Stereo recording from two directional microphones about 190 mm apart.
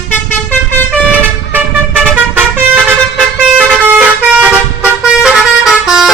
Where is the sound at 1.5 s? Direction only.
10° right (ahead or behind).